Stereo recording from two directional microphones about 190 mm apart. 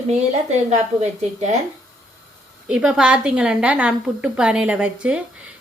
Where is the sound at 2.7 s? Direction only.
5° right (ahead or behind).